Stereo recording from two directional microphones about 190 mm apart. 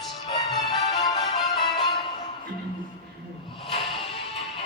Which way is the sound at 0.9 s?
20° left (ahead or behind).